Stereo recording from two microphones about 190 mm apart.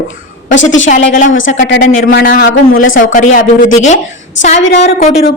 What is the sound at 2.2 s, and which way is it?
A woman's voice, 45° left (ahead or behind).